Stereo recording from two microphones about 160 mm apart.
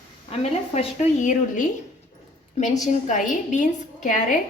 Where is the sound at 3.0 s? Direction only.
50° left (ahead or behind).